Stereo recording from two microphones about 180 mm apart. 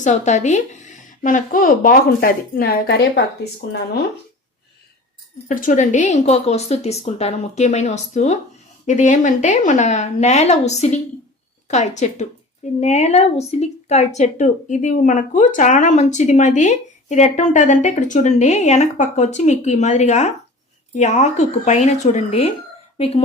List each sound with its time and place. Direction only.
0.0 s speech: 40° left (ahead or behind); by 3.2 s 65° left (ahead or behind)
5.5 s speech: 45° left (ahead or behind)